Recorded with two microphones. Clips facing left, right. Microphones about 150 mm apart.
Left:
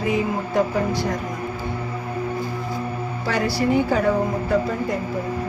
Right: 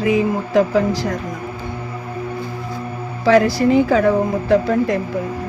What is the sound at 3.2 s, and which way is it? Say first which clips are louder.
Speech: right 9 dB; 90° right.